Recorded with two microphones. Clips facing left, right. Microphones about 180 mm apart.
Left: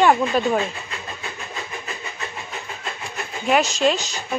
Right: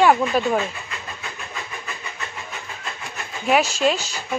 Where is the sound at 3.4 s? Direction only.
5° right (ahead or behind).